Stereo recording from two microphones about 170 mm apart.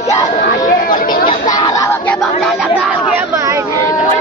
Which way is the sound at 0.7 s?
55° left (ahead or behind).